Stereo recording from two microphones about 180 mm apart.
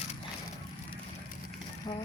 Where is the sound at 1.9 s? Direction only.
25° left (ahead or behind).